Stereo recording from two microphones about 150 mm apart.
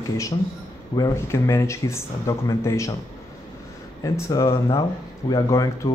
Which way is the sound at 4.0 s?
20° left (ahead or behind).